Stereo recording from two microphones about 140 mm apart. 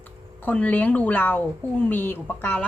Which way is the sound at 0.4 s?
10° left (ahead or behind).